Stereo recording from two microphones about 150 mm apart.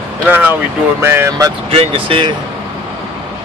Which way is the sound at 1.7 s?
35° right (ahead or behind).